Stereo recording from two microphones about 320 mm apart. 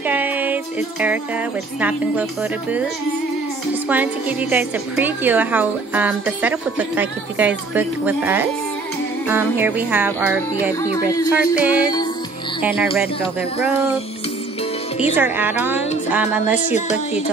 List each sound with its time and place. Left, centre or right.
0.0 s music: centre
1.8 s a woman's voice: centre
3.9 s a woman's voice: centre
15.1 s a woman's voice: centre